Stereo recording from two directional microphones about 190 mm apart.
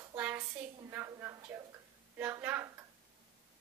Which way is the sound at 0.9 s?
15° right (ahead or behind).